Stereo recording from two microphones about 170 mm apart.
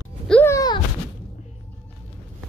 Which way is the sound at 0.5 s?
25° left (ahead or behind).